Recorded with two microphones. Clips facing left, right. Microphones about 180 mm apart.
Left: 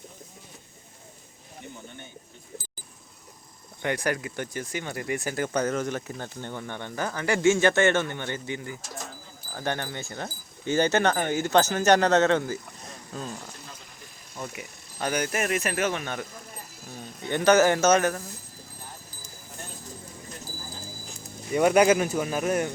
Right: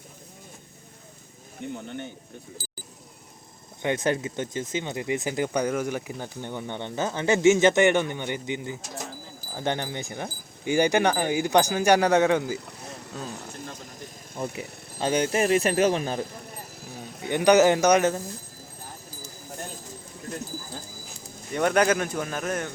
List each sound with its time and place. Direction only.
3.8 s speech: 20° right (ahead or behind); by 13.4 s 5° right (ahead or behind)
14.3 s speech: 30° right (ahead or behind)
16.9 s a man's voice: 15° right (ahead or behind)
21.5 s speech: 10° left (ahead or behind)